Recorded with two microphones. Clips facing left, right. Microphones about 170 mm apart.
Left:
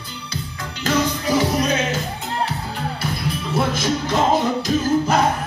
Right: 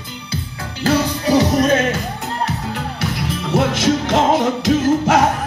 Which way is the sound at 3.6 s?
90° right.